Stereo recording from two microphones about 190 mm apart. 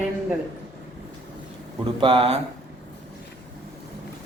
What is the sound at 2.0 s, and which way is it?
Speech, 25° right (ahead or behind).